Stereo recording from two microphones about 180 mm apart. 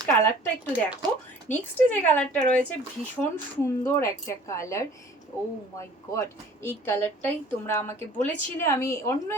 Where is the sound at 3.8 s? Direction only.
15° left (ahead or behind).